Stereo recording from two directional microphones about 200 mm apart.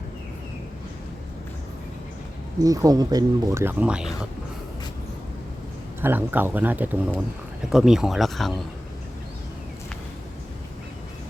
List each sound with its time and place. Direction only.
2.6 s speech: 15° right (ahead or behind)
6.0 s speech: 10° right (ahead or behind)